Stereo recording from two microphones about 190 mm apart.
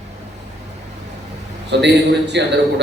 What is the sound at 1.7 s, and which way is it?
Speech, 65° right (ahead or behind).